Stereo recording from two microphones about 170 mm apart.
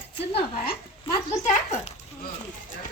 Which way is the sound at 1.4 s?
45° left (ahead or behind).